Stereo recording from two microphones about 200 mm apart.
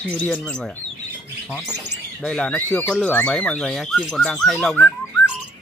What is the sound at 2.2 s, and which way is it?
Speech, 5° left (ahead or behind).